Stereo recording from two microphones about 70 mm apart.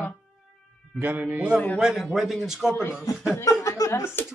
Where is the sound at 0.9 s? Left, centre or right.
Right.